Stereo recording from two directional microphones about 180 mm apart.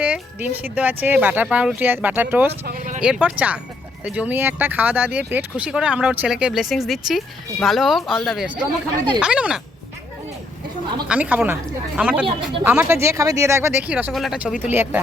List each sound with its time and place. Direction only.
0.0 s speech: 10° right (ahead or behind)
2.5 s speech: 55° right (ahead or behind)
3.0 s speech: 5° right (ahead or behind)
11.1 s speech: 10° right (ahead or behind)